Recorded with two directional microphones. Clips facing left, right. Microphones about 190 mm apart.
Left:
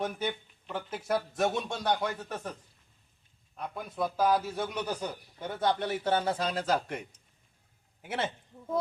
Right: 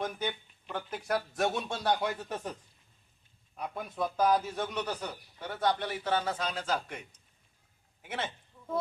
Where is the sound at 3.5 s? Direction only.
Centre (ahead or behind); by 7.0 s 40° left (ahead or behind).